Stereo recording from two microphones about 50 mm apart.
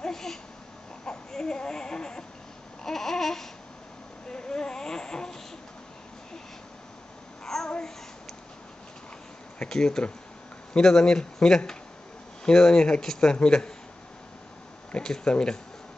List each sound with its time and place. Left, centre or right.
0.0 s a sound: centre
2.8 s babbling: centre
4.3 s a sound: centre
7.4 s babbling: centre
9.6 s speech: centre
14.9 s speech: centre